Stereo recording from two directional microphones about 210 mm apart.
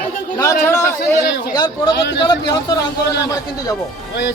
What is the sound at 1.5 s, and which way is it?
Speech, 20° left (ahead or behind).